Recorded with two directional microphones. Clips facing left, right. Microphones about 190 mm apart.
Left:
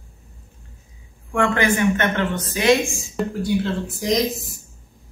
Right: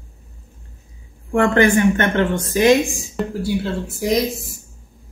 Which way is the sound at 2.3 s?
45° right (ahead or behind).